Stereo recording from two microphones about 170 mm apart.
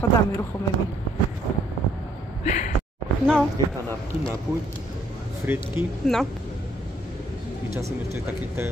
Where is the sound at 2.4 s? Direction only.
45° left (ahead or behind).